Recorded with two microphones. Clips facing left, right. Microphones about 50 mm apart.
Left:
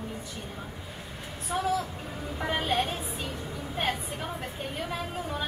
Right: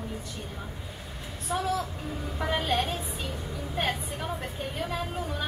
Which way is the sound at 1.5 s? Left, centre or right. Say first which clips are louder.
Right 1 dB; centre.